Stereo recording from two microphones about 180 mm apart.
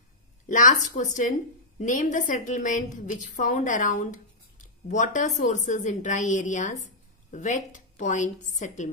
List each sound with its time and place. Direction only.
0.5 s a woman's voice: 45° left (ahead or behind)